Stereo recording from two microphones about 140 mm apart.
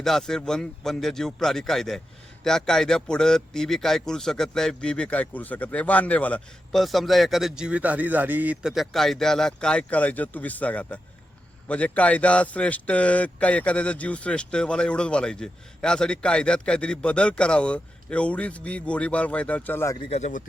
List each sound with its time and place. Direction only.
0.0 s a man's voice: 5° left (ahead or behind)
20.0 s speech: 50° left (ahead or behind)